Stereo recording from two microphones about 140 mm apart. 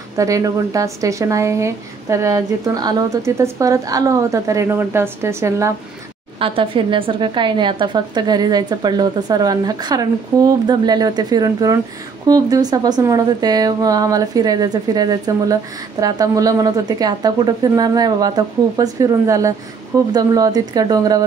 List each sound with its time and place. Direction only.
0.2 s speech: 25° right (ahead or behind)
6.4 s speech: 40° right (ahead or behind)